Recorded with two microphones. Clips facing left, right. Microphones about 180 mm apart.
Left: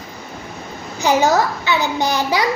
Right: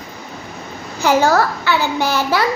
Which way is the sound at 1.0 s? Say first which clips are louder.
Right 1 dB; 15° left (ahead or behind).